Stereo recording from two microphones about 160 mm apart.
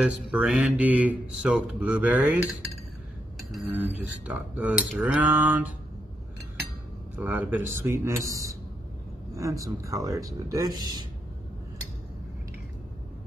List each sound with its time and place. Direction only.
0.0 s speech: 5° right (ahead or behind)
4.3 s speech: 10° right (ahead or behind)
7.2 s speech: 10° right (ahead or behind)